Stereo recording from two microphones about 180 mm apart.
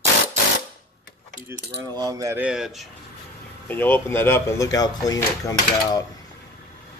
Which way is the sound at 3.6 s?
10° left (ahead or behind).